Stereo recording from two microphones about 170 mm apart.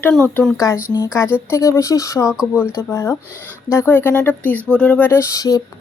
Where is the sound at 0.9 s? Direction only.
15° left (ahead or behind).